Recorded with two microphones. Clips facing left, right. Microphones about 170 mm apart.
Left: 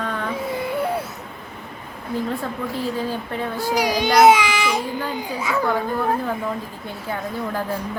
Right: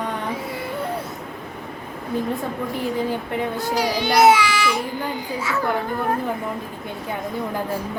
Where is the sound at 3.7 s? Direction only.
15° left (ahead or behind).